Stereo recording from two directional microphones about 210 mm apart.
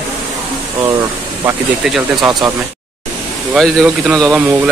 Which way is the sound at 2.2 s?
15° right (ahead or behind).